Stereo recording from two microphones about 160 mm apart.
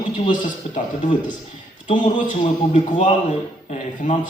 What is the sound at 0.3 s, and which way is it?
Speech, 50° left (ahead or behind).